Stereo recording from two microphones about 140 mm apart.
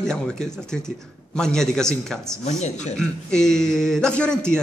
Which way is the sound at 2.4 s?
55° left (ahead or behind).